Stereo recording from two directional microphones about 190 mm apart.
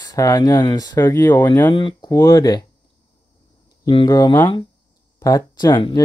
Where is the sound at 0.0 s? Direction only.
20° left (ahead or behind).